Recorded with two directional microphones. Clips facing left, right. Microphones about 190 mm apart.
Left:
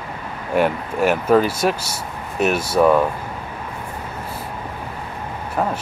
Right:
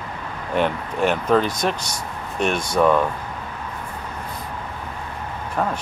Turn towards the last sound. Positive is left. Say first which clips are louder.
# left 2 dB
turn(degrees=5)  # may be behind; listen again after turning